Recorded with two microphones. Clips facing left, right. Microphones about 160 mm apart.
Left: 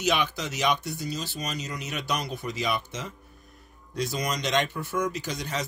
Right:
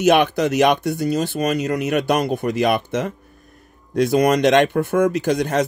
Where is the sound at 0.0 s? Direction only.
55° right (ahead or behind).